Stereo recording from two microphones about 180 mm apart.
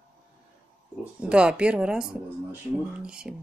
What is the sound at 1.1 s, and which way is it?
Speech, 5° right (ahead or behind).